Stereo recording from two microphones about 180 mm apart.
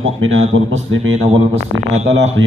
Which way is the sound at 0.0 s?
90° right.